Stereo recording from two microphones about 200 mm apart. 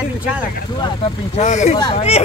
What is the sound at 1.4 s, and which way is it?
Speech, 35° left (ahead or behind).